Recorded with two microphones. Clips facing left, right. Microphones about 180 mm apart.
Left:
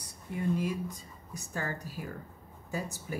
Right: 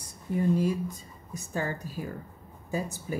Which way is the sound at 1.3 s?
25° right (ahead or behind).